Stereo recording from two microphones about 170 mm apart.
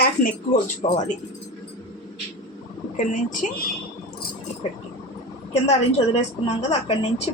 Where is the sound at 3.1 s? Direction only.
50° left (ahead or behind).